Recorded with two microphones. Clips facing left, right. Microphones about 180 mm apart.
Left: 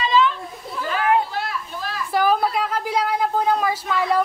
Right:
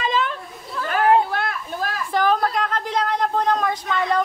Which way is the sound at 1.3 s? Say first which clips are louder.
Right 2 dB; 50° right (ahead or behind).